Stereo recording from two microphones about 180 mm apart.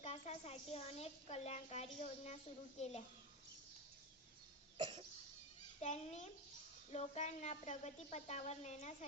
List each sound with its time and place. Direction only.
0.0 s a woman's voice: 40° left (ahead or behind)
4.8 s cough: 25° right (ahead or behind)
5.8 s speech: 40° left (ahead or behind)